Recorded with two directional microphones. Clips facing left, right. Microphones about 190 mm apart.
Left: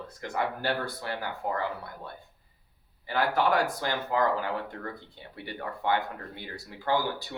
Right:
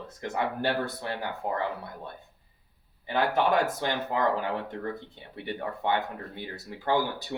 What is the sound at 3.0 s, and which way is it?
Speech, 20° right (ahead or behind).